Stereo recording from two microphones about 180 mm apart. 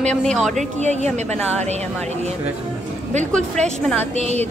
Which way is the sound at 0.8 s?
40° right (ahead or behind).